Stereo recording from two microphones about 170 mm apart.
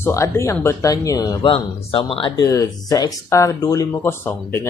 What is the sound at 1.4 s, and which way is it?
Speech, 35° left (ahead or behind).